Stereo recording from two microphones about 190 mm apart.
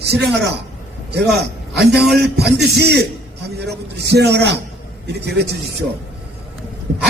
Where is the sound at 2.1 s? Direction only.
60° right (ahead or behind).